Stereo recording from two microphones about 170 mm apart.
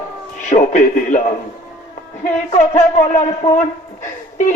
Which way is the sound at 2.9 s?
45° left (ahead or behind).